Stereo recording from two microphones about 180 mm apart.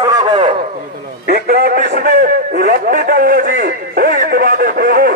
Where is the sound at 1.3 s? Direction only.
60° right (ahead or behind).